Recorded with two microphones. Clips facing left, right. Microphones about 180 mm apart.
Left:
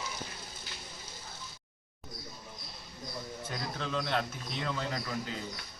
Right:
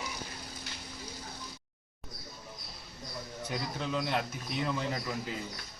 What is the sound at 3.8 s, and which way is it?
A man's voice, 10° right (ahead or behind).